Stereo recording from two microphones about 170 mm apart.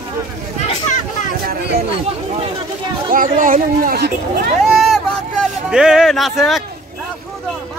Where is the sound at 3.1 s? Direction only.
50° right (ahead or behind).